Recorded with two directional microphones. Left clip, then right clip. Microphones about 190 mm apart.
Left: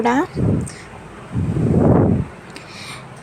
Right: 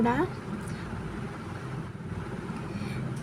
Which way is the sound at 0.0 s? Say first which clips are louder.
Left 9 dB; 35° left (ahead or behind).